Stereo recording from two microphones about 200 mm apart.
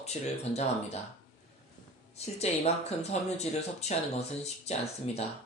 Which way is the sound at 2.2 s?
30° left (ahead or behind).